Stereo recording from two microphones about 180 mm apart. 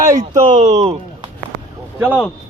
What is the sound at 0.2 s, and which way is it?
Speech, 40° right (ahead or behind).